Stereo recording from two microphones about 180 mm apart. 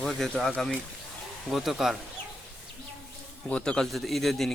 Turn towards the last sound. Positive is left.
turn(degrees=0)  # may be behind; listen again after turning